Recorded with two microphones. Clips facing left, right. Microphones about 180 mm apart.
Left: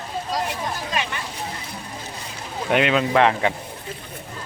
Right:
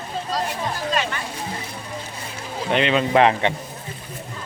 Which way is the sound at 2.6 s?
5° left (ahead or behind).